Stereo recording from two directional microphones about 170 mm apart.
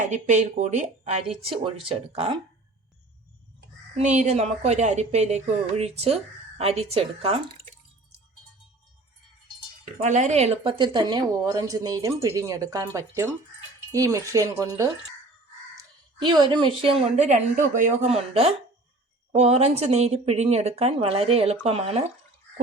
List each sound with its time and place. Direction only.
0.1 s speech: 45° right (ahead or behind)
3.9 s speech: 45° right (ahead or behind)
10.0 s a woman's voice: 45° right (ahead or behind)